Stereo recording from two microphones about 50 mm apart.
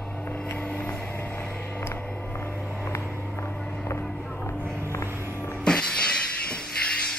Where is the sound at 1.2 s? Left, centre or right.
Left.